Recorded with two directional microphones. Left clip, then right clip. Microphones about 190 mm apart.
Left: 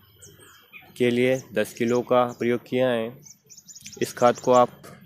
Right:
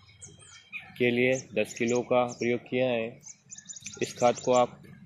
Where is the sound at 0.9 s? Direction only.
30° left (ahead or behind).